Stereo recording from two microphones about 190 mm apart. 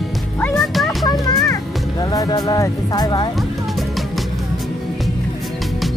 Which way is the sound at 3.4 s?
Centre (ahead or behind).